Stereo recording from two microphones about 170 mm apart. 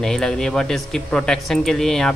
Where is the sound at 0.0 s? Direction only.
Centre (ahead or behind).